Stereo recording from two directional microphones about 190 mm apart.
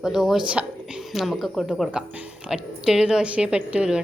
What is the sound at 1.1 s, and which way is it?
A woman's voice, centre (ahead or behind).